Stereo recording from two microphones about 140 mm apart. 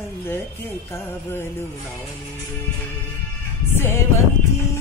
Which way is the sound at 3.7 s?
15° left (ahead or behind).